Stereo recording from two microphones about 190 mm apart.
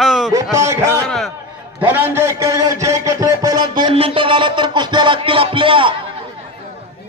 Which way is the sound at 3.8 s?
30° right (ahead or behind).